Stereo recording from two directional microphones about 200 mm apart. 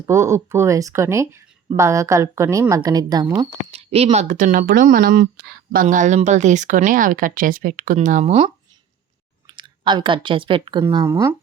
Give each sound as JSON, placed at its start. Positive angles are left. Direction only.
{"t": 0.0, "sound": "speech", "side_deg": -15}
{"t": 3.7, "sound": "speech", "side_deg": -30}
{"t": 9.5, "sound": "speech", "side_deg": -25}
{"t": 10.8, "sound": "speech", "side_deg": -15}